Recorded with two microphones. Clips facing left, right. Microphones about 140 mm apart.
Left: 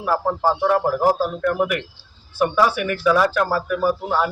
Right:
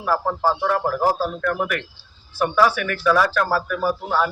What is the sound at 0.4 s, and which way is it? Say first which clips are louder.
A man's voice: left 3 dB; 15° left (ahead or behind).